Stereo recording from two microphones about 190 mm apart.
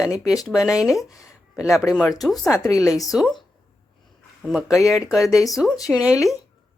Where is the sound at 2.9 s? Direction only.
20° left (ahead or behind).